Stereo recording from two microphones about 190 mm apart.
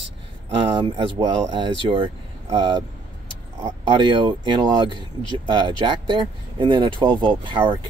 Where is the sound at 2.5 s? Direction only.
25° right (ahead or behind).